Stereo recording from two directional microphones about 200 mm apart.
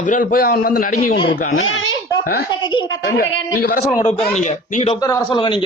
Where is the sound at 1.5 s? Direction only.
80° left.